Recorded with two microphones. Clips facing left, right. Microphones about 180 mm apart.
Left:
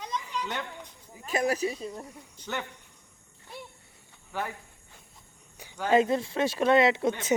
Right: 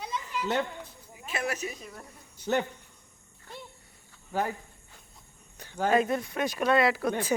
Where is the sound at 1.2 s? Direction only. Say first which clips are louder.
Left 6 dB; 40° left (ahead or behind).